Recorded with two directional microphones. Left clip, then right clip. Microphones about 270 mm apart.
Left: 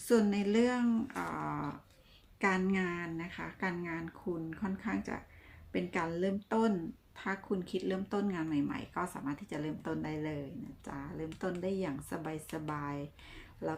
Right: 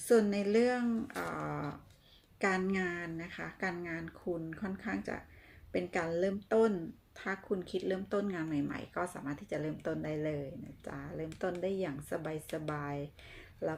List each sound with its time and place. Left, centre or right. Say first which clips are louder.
0.0 s speech: right 2 dB; centre